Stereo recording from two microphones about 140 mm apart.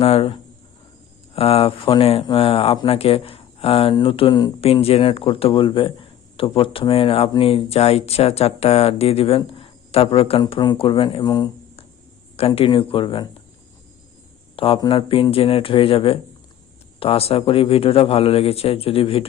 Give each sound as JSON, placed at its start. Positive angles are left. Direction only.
{"t": 0.0, "sound": "a sound", "side_deg": 45}
{"t": 1.4, "sound": "speech", "side_deg": 45}
{"t": 4.6, "sound": "speech", "side_deg": 45}
{"t": 12.4, "sound": "speech", "side_deg": 40}
{"t": 14.5, "sound": "speech", "side_deg": 40}